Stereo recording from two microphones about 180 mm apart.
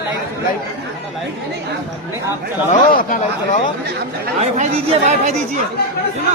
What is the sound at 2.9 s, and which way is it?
Speech, 50° left (ahead or behind).